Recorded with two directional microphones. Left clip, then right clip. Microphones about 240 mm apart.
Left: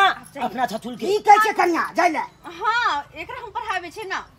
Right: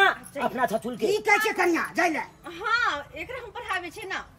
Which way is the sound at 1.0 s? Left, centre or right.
Centre.